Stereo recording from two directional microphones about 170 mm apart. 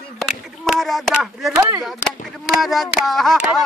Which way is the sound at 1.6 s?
20° right (ahead or behind).